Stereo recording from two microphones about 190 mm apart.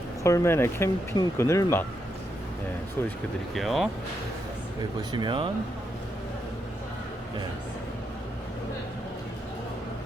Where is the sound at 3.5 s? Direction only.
Centre (ahead or behind).